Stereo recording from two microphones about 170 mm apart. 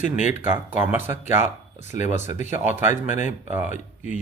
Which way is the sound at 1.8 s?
45° left (ahead or behind).